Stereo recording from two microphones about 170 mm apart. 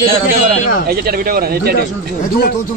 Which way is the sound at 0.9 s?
60° right (ahead or behind).